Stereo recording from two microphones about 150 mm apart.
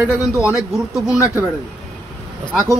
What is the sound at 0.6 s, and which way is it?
Speech, 5° right (ahead or behind).